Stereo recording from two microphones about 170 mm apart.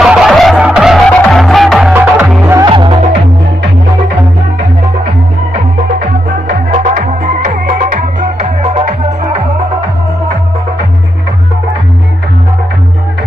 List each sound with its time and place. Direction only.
0.0 s music: centre (ahead or behind)
2.6 s music: 30° right (ahead or behind)
6.5 s music: 50° right (ahead or behind)